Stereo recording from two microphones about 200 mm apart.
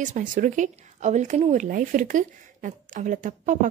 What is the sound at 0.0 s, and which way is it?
Speech, 40° right (ahead or behind).